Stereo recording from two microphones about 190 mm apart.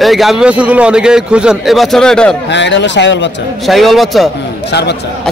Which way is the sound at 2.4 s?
70° left (ahead or behind).